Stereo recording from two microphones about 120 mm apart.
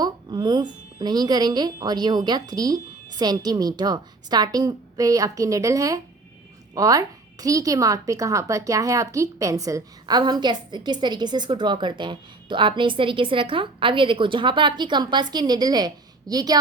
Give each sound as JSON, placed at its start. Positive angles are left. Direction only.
{"t": 0.0, "sound": "a woman's voice", "side_deg": -35}